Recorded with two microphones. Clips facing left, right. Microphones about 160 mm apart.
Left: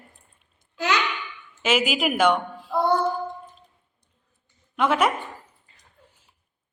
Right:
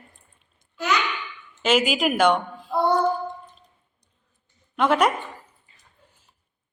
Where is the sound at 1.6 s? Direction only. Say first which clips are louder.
Right 2 dB; 5° left (ahead or behind).